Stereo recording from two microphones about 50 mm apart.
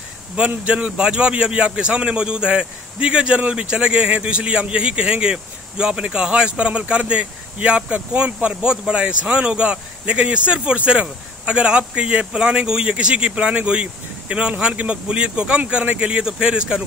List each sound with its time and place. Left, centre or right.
0.4 s a man's voice: right
15.8 s speech: right
16.1 s speech: centre